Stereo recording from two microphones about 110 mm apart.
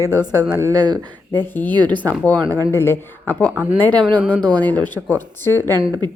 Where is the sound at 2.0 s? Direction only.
15° left (ahead or behind).